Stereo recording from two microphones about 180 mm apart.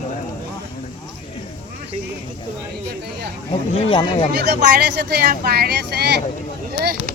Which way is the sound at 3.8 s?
30° left (ahead or behind).